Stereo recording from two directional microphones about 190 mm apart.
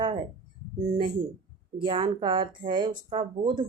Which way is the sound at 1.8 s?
25° right (ahead or behind).